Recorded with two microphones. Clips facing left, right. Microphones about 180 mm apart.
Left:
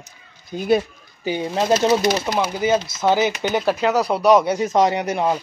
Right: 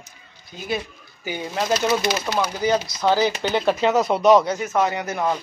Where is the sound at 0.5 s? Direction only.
50° left (ahead or behind).